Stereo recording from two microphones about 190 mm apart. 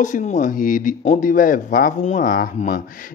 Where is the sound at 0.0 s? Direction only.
40° left (ahead or behind).